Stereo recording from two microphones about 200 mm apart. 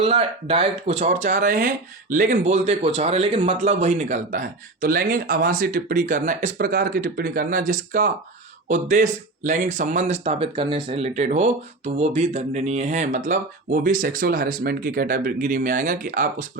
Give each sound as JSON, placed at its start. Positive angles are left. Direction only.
{"t": 0.0, "sound": "speech", "side_deg": -30}